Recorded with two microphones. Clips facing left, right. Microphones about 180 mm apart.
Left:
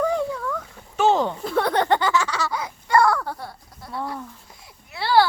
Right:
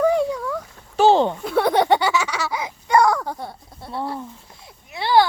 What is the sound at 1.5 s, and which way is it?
Speech, 10° right (ahead or behind).